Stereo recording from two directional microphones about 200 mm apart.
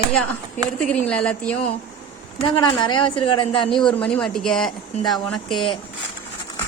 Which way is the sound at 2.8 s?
25° left (ahead or behind).